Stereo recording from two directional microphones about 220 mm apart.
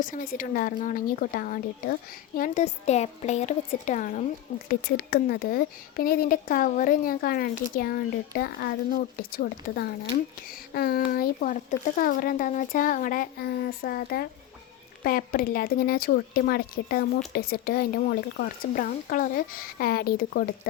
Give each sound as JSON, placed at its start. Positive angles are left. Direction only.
{"t": 0.0, "sound": "speech", "side_deg": 40}